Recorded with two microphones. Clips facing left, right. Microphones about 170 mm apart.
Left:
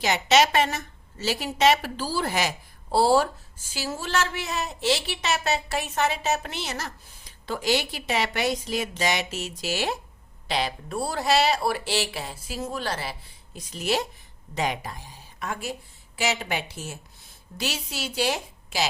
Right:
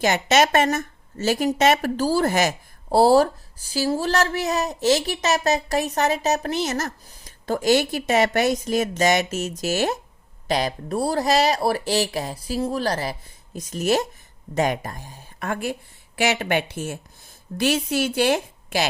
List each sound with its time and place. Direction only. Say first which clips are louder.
0.0 s a woman's voice: right 2 dB; 50° right (ahead or behind)